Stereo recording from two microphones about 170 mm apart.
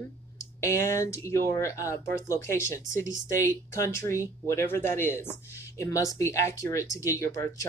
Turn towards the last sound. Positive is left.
turn(degrees=15)  # may be behind; listen again after turning